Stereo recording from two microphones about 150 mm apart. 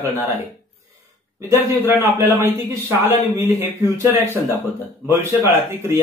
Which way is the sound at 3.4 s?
15° right (ahead or behind).